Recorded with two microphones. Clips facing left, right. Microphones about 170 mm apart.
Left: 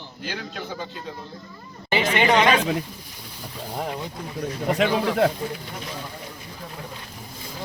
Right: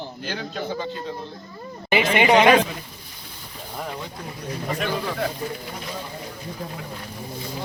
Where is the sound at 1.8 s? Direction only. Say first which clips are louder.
Right 2 dB; 15° right (ahead or behind).